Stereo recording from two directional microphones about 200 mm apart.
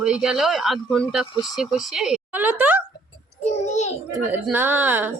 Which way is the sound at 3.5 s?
35° left (ahead or behind).